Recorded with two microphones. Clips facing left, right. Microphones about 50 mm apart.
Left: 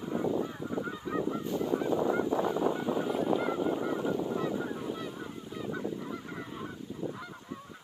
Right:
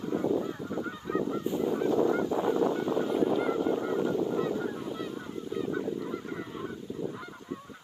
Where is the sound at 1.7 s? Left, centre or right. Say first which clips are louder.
Right 2 dB; centre.